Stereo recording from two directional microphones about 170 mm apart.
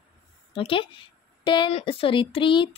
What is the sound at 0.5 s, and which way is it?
Speech, 30° left (ahead or behind).